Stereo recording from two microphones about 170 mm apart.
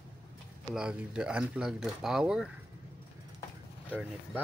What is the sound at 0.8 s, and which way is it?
Speech, 5° right (ahead or behind).